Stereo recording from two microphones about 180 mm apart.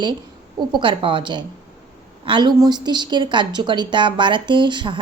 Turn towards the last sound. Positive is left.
turn(degrees=-25)  # may be behind; listen again after turning